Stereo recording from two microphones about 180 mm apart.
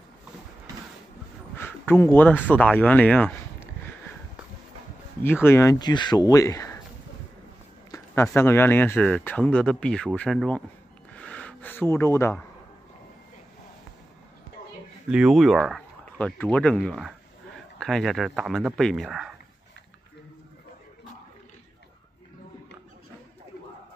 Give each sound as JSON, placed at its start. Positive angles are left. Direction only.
{"t": 1.6, "sound": "a man's voice", "side_deg": 10}
{"t": 5.2, "sound": "speech", "side_deg": 10}
{"t": 7.9, "sound": "speech", "side_deg": 15}
{"t": 11.1, "sound": "a sound", "side_deg": 5}
{"t": 15.0, "sound": "speech", "side_deg": -5}